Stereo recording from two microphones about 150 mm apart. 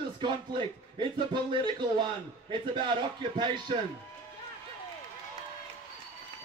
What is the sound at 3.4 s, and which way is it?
Speech, 30° right (ahead or behind).